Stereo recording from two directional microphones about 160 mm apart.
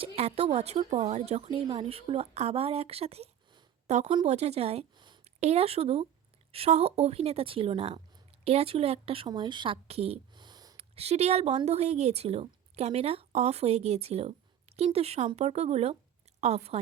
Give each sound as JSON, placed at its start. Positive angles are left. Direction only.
{"t": 0.0, "sound": "speech", "side_deg": -40}
{"t": 1.5, "sound": "speech", "side_deg": -30}
{"t": 4.9, "sound": "a sound", "side_deg": -30}
{"t": 5.2, "sound": "speech", "side_deg": -40}
{"t": 10.8, "sound": "a woman's voice", "side_deg": -40}